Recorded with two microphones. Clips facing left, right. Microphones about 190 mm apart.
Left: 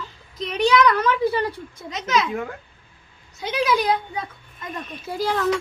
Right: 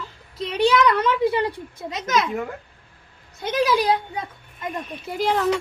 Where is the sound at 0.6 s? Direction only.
25° right (ahead or behind).